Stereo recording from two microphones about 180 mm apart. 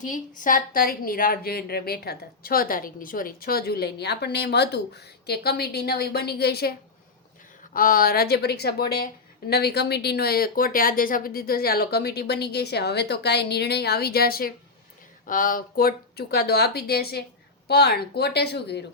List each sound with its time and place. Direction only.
0.0 s a woman's voice: 45° left (ahead or behind)
7.7 s a woman's voice: 50° left (ahead or behind); by 18.9 s 65° left (ahead or behind)